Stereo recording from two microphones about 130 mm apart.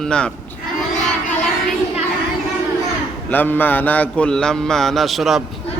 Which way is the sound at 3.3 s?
15° left (ahead or behind).